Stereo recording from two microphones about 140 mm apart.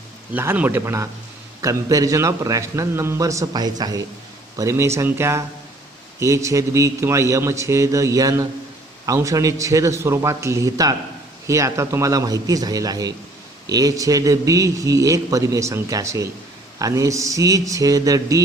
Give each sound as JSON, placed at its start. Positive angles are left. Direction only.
{"t": 0.3, "sound": "a man's voice", "side_deg": -15}